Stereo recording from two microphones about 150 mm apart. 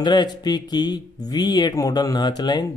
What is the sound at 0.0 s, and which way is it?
Speech, 30° left (ahead or behind).